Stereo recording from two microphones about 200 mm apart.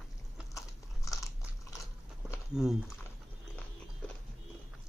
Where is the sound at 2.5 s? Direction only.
5° right (ahead or behind).